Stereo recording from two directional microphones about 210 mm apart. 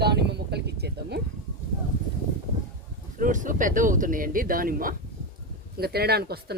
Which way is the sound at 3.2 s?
40° right (ahead or behind).